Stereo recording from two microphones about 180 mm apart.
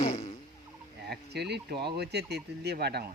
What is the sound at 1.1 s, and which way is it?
Speech, 65° right (ahead or behind).